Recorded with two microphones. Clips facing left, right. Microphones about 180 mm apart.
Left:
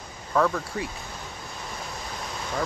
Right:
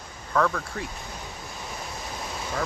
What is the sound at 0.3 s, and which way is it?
Speech, 10° left (ahead or behind).